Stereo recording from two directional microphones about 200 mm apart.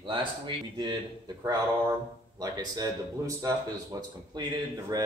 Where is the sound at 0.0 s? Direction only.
25° right (ahead or behind).